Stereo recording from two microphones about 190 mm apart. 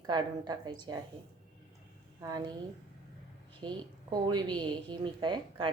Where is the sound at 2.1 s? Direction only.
20° right (ahead or behind).